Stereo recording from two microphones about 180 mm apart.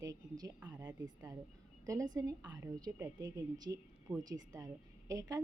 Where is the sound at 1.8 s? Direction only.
20° right (ahead or behind).